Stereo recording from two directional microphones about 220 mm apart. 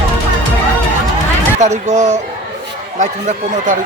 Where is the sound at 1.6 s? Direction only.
35° right (ahead or behind).